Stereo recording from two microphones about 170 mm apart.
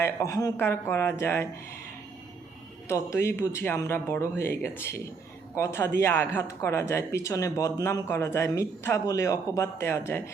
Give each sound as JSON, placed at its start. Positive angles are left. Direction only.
{"t": 0.0, "sound": "speech", "side_deg": 20}
{"t": 2.9, "sound": "speech", "side_deg": 15}